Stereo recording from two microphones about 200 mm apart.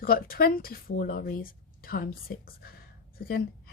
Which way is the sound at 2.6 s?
50° left (ahead or behind).